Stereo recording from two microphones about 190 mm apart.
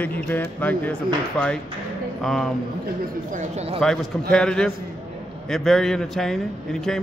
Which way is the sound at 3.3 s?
35° right (ahead or behind).